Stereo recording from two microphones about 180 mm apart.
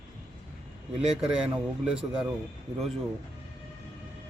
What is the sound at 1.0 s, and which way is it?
Speech, 5° right (ahead or behind).